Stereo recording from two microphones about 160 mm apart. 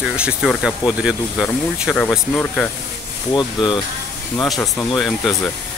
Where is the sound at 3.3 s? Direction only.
30° left (ahead or behind).